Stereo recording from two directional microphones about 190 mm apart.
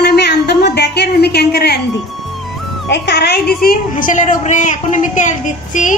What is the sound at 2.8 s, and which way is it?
Speech, 65° left (ahead or behind).